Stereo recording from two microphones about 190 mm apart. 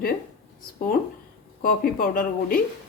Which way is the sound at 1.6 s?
45° left (ahead or behind).